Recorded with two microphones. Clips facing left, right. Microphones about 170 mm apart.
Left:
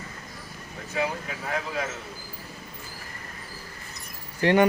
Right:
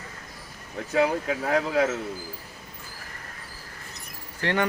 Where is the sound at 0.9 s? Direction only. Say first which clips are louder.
Right 6 dB; 70° right (ahead or behind).